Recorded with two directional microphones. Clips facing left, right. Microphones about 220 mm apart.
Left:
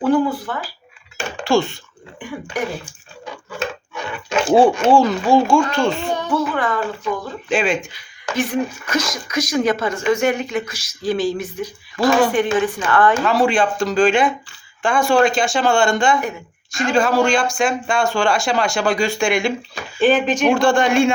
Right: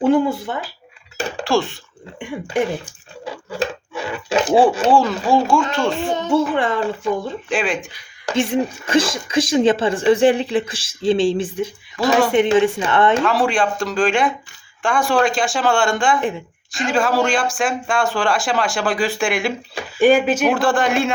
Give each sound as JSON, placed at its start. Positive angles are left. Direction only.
{"t": 0.0, "sound": "speech", "side_deg": -25}
{"t": 1.5, "sound": "speech", "side_deg": 0}
{"t": 2.1, "sound": "a sound", "side_deg": -25}
{"t": 4.9, "sound": "speech", "side_deg": 0}
{"t": 6.1, "sound": "speech", "side_deg": -25}
{"t": 7.5, "sound": "speech", "side_deg": 0}
{"t": 8.3, "sound": "speech", "side_deg": -25}
{"t": 12.0, "sound": "speech", "side_deg": 0}
{"t": 12.3, "sound": "speech", "side_deg": -25}
{"t": 13.2, "sound": "speech", "side_deg": 0}